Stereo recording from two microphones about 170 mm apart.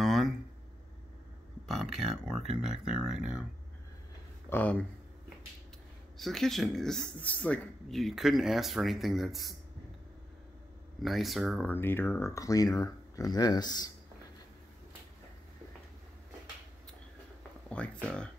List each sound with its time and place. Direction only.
0.0 s a sound: centre (ahead or behind)
1.7 s speech: centre (ahead or behind)
4.5 s speech: 10° left (ahead or behind)
6.1 s speech: centre (ahead or behind)
11.0 s speech: centre (ahead or behind)
11.7 s speech: 10° left (ahead or behind)
17.8 s speech: 5° left (ahead or behind)